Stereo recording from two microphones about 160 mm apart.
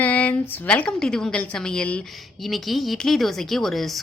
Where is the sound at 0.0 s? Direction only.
10° left (ahead or behind).